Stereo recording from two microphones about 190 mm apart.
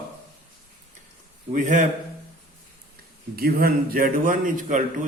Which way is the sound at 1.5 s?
40° right (ahead or behind).